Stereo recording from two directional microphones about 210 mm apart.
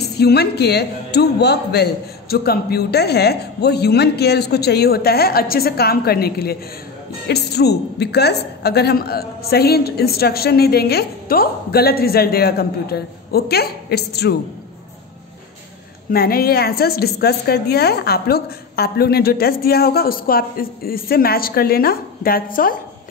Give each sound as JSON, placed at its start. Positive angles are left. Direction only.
{"t": 0.0, "sound": "a woman's voice", "side_deg": 50}
{"t": 16.1, "sound": "a woman's voice", "side_deg": 45}